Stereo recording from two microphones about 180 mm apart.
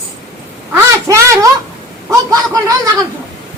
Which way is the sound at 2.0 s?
20° right (ahead or behind).